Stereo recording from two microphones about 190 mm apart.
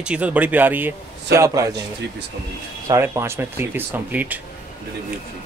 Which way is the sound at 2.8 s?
15° right (ahead or behind).